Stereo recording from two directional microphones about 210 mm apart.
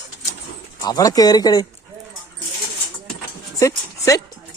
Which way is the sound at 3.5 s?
15° left (ahead or behind).